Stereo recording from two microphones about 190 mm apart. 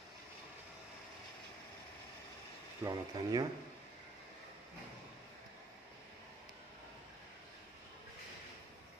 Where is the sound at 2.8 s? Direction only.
20° right (ahead or behind).